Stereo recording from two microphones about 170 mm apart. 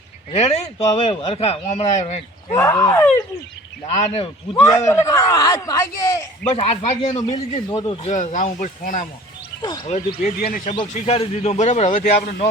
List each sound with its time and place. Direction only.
0.3 s speech: 40° left (ahead or behind)
2.5 s speech: 15° left (ahead or behind)
3.9 s speech: 40° left (ahead or behind)
4.8 s speech: 20° left (ahead or behind)
6.5 s speech: 35° left (ahead or behind)
7.0 s speech: 25° left (ahead or behind)
8.0 s speech: 45° left (ahead or behind)
9.6 s speech: 30° left (ahead or behind)
9.8 s speech: 40° left (ahead or behind)
10.4 s speech: 55° left (ahead or behind)
10.9 s speech: 35° left (ahead or behind)